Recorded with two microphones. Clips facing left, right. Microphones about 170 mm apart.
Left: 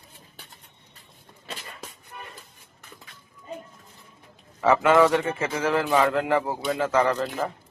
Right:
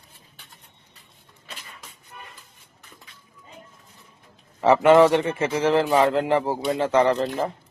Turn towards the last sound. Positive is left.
turn(degrees=-25)  # may be behind; listen again after turning